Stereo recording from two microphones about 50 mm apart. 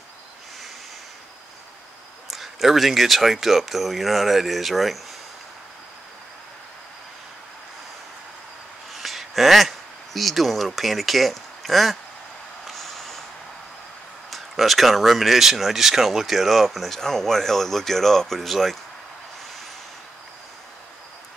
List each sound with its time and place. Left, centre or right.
2.3 s speech: centre
8.9 s speech: centre
12.6 s vehicle: centre
14.3 s speech: centre